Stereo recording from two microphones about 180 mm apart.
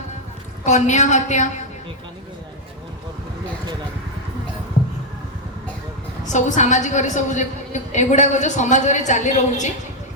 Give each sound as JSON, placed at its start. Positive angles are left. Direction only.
{"t": 0.6, "sound": "a woman's voice", "side_deg": 40}
{"t": 6.2, "sound": "a woman's voice", "side_deg": 40}